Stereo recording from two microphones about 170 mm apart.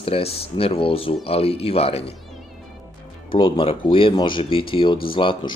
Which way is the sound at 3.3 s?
30° left (ahead or behind).